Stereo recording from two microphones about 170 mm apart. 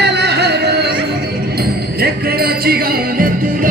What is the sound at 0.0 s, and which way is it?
Music, 75° right (ahead or behind).